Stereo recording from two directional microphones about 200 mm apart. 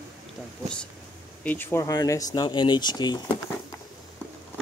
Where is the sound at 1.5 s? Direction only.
10° left (ahead or behind).